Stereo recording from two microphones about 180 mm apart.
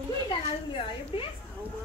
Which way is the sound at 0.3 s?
30° left (ahead or behind).